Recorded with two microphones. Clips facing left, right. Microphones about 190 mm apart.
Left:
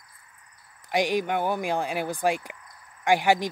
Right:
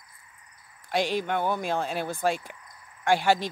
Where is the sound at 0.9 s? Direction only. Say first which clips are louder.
Left 2 dB; 15° left (ahead or behind).